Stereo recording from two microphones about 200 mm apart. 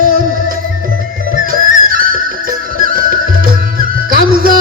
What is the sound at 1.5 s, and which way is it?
Music, 45° right (ahead or behind).